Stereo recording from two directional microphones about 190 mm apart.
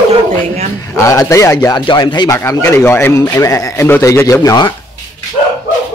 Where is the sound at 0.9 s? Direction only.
15° left (ahead or behind).